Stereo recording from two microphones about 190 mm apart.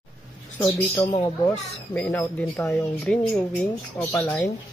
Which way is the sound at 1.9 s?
10° left (ahead or behind).